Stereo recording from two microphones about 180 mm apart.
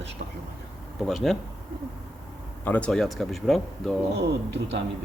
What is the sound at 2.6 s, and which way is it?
Speech, 5° left (ahead or behind).